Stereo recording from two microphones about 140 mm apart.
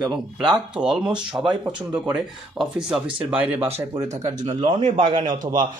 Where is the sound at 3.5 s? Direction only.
45° right (ahead or behind).